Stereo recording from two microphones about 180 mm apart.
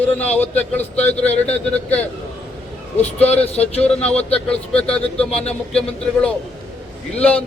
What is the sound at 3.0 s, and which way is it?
Speech, 35° left (ahead or behind).